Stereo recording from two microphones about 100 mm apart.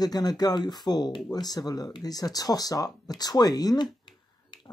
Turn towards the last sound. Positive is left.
turn(degrees=50)  # may be behind; listen again after turning